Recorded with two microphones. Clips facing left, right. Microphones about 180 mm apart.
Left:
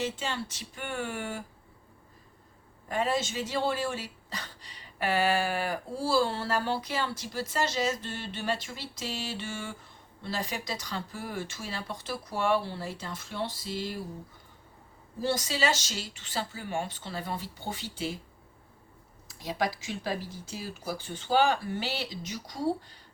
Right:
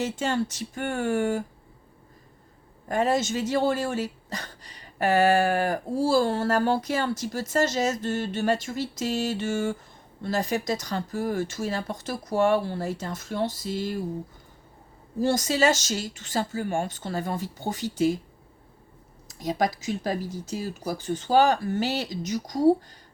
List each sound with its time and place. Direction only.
0.0 s speech: 45° right (ahead or behind)
2.9 s speech: 45° right (ahead or behind)
15.2 s speech: 45° right (ahead or behind)
19.3 s speech: 45° right (ahead or behind)